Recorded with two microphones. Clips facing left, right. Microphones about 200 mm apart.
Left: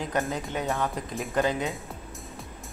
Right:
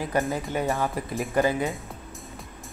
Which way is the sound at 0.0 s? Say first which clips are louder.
Right 3 dB; 5° right (ahead or behind).